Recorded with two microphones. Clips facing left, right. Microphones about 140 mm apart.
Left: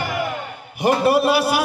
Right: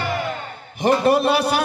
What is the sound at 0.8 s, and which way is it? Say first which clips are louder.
Speech: even; 10° left (ahead or behind).